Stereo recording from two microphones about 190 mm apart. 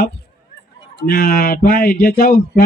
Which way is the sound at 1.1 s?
50° left (ahead or behind).